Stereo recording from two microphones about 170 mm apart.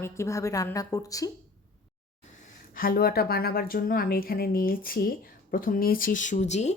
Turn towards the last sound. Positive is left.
turn(degrees=40)  # may be behind; listen again after turning